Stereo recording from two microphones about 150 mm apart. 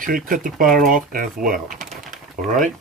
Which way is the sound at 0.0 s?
65° right (ahead or behind).